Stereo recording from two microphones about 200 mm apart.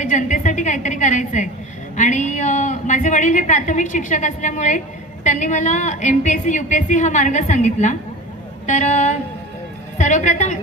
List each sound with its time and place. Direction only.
0.0 s a woman's voice: 40° left (ahead or behind)